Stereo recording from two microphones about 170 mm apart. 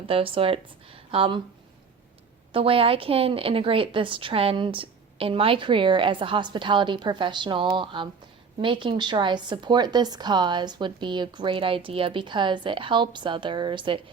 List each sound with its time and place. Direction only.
0.1 s a woman's voice: 30° right (ahead or behind)
2.5 s a woman's voice: 35° right (ahead or behind)